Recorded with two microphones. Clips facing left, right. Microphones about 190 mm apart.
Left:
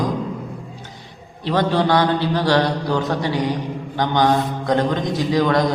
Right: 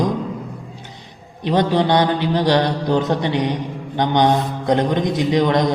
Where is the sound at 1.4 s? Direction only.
20° right (ahead or behind).